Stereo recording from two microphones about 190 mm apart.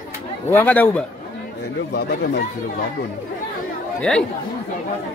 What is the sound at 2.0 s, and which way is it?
Speech, 55° left (ahead or behind).